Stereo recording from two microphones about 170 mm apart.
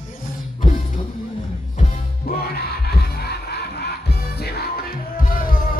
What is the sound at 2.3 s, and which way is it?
Music, 65° left (ahead or behind).